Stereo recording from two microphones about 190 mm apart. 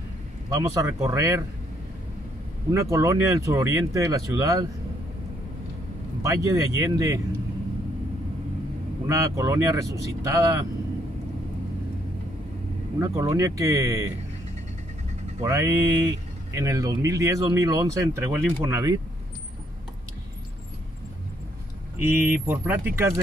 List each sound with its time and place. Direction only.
0.6 s speech: 15° right (ahead or behind)
2.7 s speech: 15° right (ahead or behind)
6.2 s speech: 15° right (ahead or behind)
9.0 s speech: 15° right (ahead or behind)
13.0 s speech: 15° right (ahead or behind)
15.4 s speech: 15° right (ahead or behind)
21.9 s speech: 10° right (ahead or behind)